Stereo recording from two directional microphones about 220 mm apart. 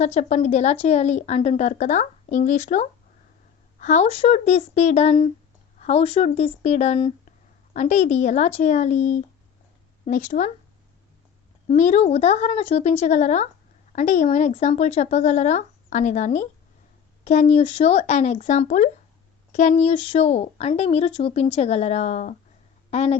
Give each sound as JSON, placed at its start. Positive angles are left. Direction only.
{"t": 0.0, "sound": "a woman's voice", "side_deg": 30}
{"t": 11.7, "sound": "a woman's voice", "side_deg": 30}